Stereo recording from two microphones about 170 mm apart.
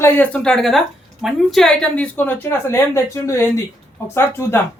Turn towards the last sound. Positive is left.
turn(degrees=15)  # may be behind; listen again after turning